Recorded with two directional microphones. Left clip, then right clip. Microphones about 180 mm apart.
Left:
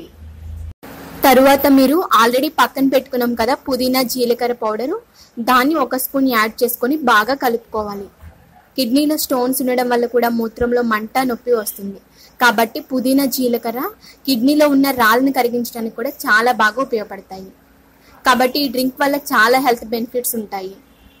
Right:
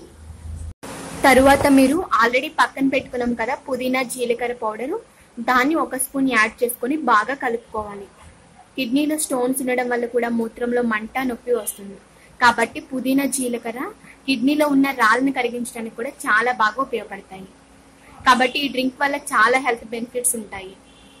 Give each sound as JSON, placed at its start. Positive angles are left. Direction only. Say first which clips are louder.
{"t": 1.2, "sound": "a woman's voice", "louder": "left 3 dB", "side_deg": 40}
{"t": 18.2, "sound": "a woman's voice", "louder": "left 2 dB", "side_deg": 35}